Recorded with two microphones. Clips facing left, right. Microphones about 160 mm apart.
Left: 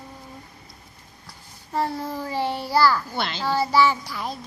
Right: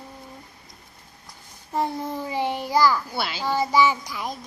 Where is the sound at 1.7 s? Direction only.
15° right (ahead or behind).